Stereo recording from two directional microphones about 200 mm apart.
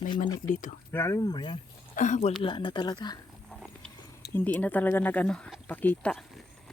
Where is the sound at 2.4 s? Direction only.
25° left (ahead or behind).